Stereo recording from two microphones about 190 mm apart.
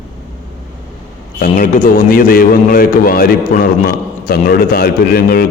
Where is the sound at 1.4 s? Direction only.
45° left (ahead or behind).